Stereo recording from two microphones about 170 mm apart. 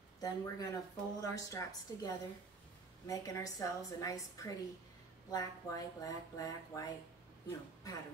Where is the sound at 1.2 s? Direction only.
20° left (ahead or behind).